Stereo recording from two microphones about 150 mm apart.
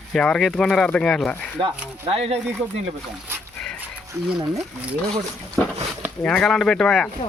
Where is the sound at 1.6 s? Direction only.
40° right (ahead or behind).